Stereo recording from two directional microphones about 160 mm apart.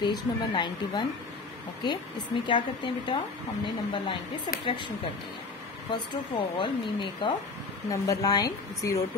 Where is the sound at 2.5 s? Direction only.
30° left (ahead or behind).